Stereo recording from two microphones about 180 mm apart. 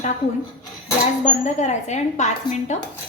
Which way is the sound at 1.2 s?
40° left (ahead or behind).